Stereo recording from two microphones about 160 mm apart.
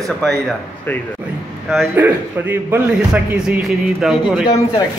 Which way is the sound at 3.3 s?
5° right (ahead or behind).